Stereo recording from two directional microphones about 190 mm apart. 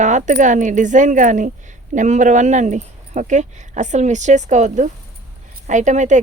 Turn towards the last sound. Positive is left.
turn(degrees=-40)  # may be behind; listen again after turning